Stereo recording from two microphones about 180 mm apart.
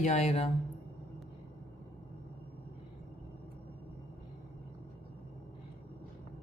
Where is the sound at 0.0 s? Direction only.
35° left (ahead or behind).